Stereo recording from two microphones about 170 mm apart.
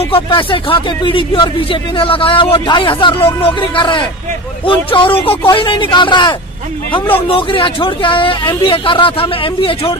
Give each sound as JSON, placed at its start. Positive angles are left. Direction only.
{"t": 0.0, "sound": "speech", "side_deg": 30}